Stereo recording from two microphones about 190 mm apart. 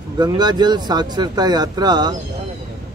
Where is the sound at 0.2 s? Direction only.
20° right (ahead or behind).